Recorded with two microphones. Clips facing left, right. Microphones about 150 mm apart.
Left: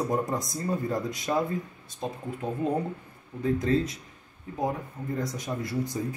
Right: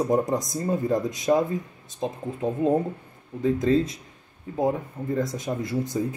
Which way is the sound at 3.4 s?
25° right (ahead or behind).